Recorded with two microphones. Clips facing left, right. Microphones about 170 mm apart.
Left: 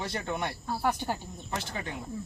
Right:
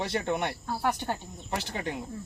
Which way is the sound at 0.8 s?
5° left (ahead or behind).